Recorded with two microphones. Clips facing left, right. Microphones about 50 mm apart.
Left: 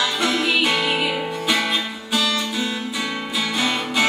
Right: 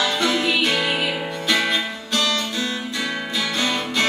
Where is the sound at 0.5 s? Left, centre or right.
Centre.